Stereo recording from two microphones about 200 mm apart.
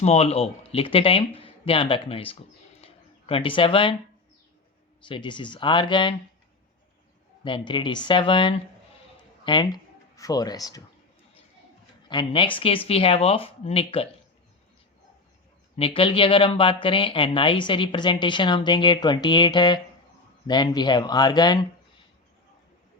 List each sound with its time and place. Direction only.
0.0 s speech: 30° left (ahead or behind)
2.8 s a sound: 30° left (ahead or behind)
5.0 s speech: 25° left (ahead or behind)
7.4 s speech: 25° left (ahead or behind)
12.0 s speech: 25° left (ahead or behind)
15.7 s speech: 25° left (ahead or behind)